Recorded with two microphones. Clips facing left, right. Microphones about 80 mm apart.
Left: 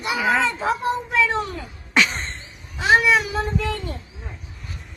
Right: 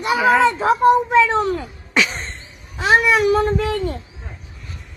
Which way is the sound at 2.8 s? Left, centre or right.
Right.